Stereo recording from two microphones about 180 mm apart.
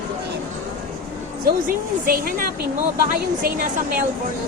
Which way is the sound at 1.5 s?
55° right (ahead or behind).